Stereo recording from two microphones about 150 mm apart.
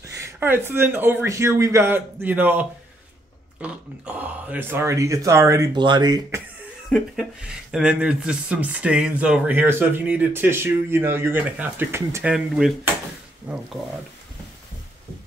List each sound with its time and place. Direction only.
0.0 s speech: 20° right (ahead or behind)
3.6 s speech: 10° right (ahead or behind); by 6.4 s 25° right (ahead or behind)
6.9 s speech: 5° right (ahead or behind)
12.2 s speech: 5° right (ahead or behind)